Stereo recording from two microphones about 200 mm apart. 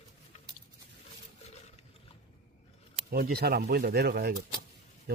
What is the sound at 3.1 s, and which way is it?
Speech, 50° right (ahead or behind).